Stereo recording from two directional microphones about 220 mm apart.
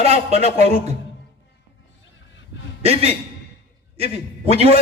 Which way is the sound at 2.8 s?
25° right (ahead or behind).